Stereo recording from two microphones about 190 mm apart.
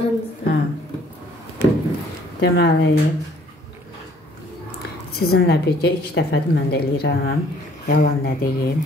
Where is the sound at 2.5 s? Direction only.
60° left (ahead or behind).